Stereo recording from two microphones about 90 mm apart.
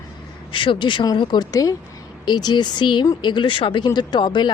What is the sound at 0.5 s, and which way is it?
Speech, 65° left (ahead or behind).